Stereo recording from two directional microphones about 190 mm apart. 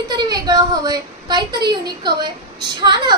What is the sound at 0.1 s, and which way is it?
A woman's voice, 20° right (ahead or behind).